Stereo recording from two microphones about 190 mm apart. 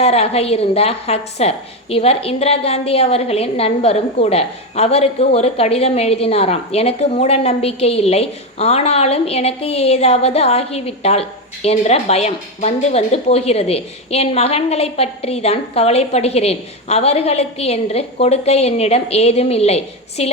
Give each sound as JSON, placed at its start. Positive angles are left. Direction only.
{"t": 0.0, "sound": "a woman's voice", "side_deg": 30}